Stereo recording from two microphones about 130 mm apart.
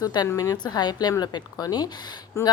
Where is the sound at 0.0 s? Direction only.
30° left (ahead or behind).